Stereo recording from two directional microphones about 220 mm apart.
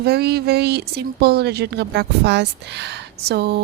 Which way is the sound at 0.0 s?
45° right (ahead or behind).